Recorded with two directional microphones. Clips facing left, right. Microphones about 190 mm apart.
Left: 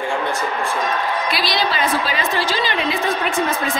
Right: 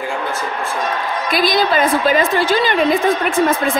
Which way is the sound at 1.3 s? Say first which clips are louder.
Right 10 dB; 50° right (ahead or behind).